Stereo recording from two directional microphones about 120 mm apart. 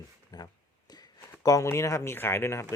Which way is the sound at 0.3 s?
30° left (ahead or behind).